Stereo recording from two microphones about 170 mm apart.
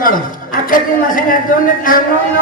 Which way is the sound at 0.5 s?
55° left (ahead or behind).